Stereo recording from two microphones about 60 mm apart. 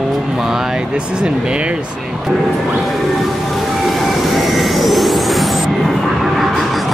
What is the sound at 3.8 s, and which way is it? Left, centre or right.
Vehicle, centre.